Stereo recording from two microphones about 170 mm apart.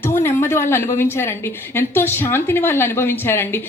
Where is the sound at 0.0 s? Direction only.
15° left (ahead or behind).